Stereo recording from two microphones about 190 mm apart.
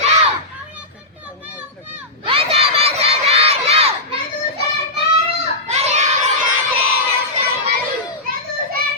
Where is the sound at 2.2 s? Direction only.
30° right (ahead or behind).